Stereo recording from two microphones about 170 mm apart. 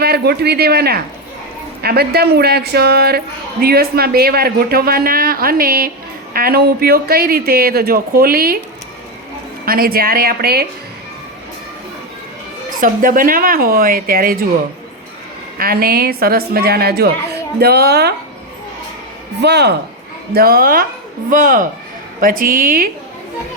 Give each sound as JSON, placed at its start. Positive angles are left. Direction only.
{"t": 0.0, "sound": "a woman's voice", "side_deg": -70}
{"t": 9.6, "sound": "a man's voice", "side_deg": -60}
{"t": 12.8, "sound": "a man's voice", "side_deg": -55}
{"t": 15.5, "sound": "a woman's voice", "side_deg": -60}
{"t": 19.4, "sound": "speech", "side_deg": -80}
{"t": 20.3, "sound": "a man's voice", "side_deg": -65}